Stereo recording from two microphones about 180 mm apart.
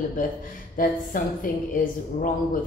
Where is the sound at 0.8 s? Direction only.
50° left (ahead or behind).